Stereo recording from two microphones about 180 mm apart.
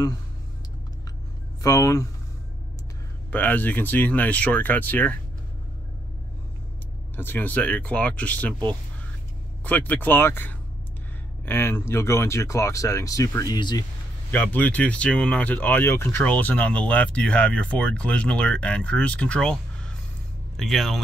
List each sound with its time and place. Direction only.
1.6 s speech: 20° left (ahead or behind)
3.3 s speech: 10° left (ahead or behind)
7.2 s speech: 10° left (ahead or behind)
9.7 s speech: 10° left (ahead or behind)
14.3 s speech: 10° left (ahead or behind)